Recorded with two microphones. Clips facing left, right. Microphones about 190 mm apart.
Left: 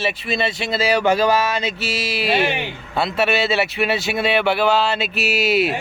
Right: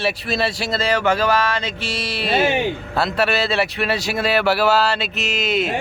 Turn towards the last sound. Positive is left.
turn(degrees=10)  # may be behind; listen again after turning